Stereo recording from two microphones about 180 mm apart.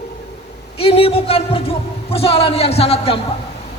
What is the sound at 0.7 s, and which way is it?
A man's voice, 30° left (ahead or behind).